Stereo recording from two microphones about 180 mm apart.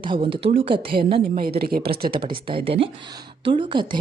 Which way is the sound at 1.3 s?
60° right (ahead or behind).